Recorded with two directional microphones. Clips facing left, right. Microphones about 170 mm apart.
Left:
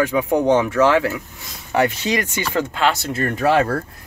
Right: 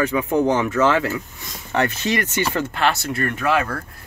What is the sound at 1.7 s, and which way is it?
Speech, 15° left (ahead or behind).